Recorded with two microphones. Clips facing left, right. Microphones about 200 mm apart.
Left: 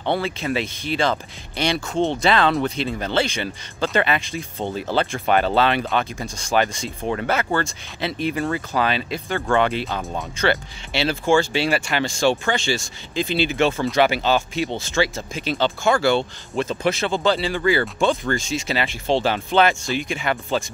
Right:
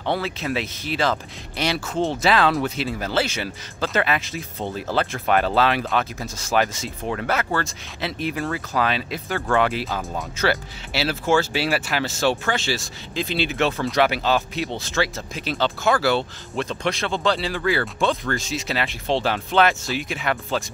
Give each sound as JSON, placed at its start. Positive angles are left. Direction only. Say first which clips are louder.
{"t": 0.0, "sound": "speech", "louder": "left 2 dB", "side_deg": 0}